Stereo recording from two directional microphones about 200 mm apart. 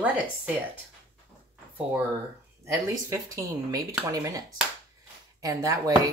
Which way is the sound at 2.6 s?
15° right (ahead or behind).